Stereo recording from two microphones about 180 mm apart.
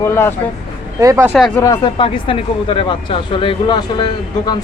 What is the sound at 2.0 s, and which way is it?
Speech, 30° left (ahead or behind).